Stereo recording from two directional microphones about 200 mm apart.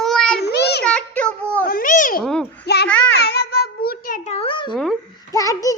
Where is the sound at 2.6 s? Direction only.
55° left (ahead or behind).